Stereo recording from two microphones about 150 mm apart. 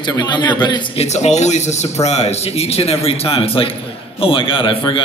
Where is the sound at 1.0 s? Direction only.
45° left (ahead or behind).